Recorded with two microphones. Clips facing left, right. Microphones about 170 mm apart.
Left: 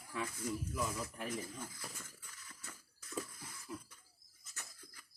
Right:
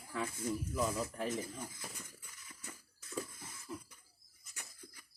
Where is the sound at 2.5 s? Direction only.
15° right (ahead or behind).